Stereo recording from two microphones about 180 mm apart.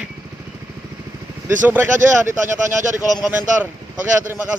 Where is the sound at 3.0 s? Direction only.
20° left (ahead or behind).